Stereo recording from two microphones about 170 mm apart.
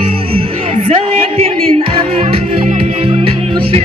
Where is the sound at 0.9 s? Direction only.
35° right (ahead or behind).